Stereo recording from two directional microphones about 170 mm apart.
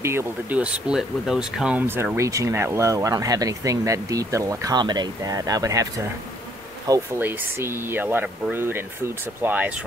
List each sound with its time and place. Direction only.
0.0 s speech: 15° right (ahead or behind)